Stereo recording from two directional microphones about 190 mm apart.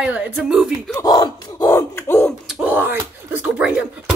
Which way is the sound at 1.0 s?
20° left (ahead or behind).